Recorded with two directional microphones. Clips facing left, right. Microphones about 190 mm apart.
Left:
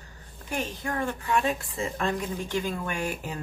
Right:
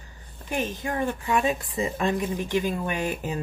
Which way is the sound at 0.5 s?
15° right (ahead or behind).